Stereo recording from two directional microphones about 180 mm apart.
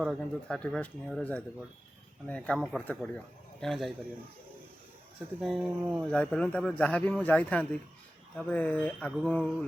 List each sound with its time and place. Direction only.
0.0 s a man's voice: centre (ahead or behind)
5.4 s a man's voice: centre (ahead or behind)